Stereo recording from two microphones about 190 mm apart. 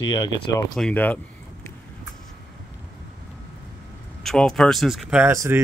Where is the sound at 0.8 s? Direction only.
5° left (ahead or behind).